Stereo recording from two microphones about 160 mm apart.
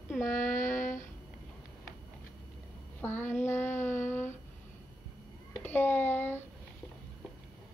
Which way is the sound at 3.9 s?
50° left (ahead or behind).